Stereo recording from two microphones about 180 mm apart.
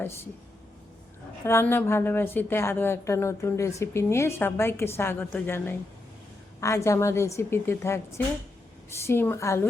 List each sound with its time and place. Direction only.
1.5 s a woman's voice: 15° left (ahead or behind)